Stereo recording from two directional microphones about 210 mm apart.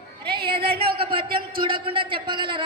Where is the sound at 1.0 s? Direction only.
25° right (ahead or behind).